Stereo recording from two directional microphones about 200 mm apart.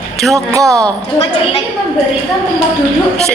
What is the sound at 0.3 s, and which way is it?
Speech, 15° right (ahead or behind).